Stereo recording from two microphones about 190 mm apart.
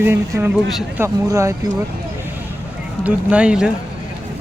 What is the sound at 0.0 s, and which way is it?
Speech, 10° right (ahead or behind).